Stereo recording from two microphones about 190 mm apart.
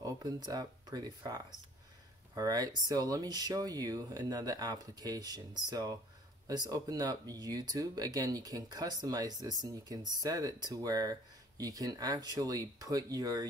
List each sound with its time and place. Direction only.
0.0 s speech: 20° right (ahead or behind)